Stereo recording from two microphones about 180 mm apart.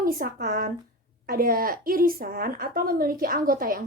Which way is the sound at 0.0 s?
50° right (ahead or behind).